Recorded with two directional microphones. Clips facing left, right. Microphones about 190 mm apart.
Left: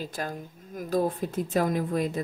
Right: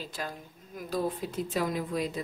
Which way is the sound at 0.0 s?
50° left (ahead or behind).